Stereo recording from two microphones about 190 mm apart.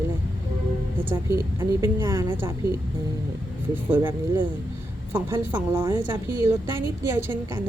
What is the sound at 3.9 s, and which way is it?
A woman's voice, 10° right (ahead or behind).